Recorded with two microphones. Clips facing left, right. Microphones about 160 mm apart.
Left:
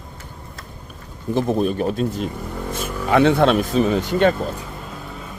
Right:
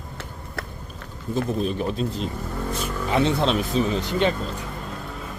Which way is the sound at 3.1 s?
60° left (ahead or behind).